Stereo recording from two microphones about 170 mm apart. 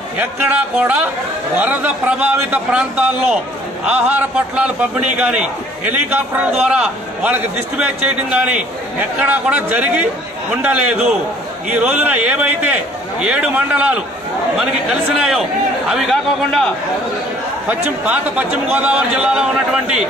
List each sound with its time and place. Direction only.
0.2 s a man's voice: 10° right (ahead or behind)
15.1 s a man's voice: 5° right (ahead or behind)
17.6 s a man's voice: 10° right (ahead or behind)